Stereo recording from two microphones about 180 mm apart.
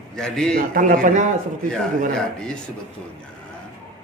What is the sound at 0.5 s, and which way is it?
Speech, 50° right (ahead or behind).